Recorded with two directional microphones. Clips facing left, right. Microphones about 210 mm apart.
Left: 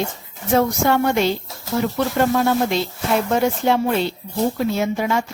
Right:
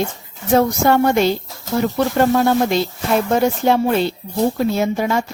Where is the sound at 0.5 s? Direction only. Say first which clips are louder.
Right 3 dB; 40° right (ahead or behind).